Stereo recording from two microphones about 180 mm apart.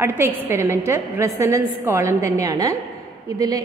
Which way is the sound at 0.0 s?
15° right (ahead or behind).